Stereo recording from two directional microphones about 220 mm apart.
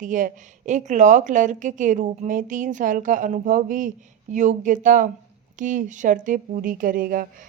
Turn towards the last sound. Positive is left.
turn(degrees=-40)  # may be behind; listen again after turning